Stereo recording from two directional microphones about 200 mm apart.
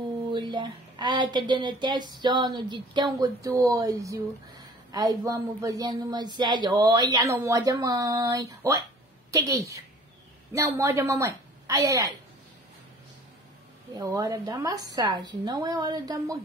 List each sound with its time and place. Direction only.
0.3 s a woman's voice: 25° right (ahead or behind)
13.9 s speech: 20° right (ahead or behind)